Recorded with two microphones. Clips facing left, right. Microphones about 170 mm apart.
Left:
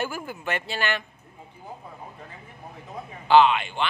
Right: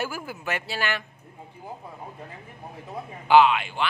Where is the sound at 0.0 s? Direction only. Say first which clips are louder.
Left 1 dB; 5° right (ahead or behind).